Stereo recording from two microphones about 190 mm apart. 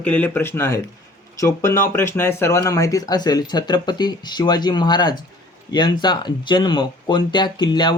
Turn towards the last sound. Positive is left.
turn(degrees=25)  # may be behind; listen again after turning